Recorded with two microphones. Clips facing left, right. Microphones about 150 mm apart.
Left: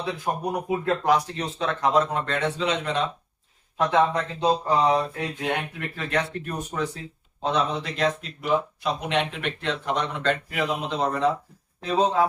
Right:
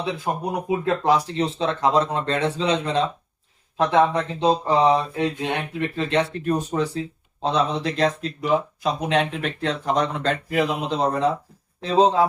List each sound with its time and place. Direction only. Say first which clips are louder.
0.3 s speech: right 1 dB; 20° right (ahead or behind)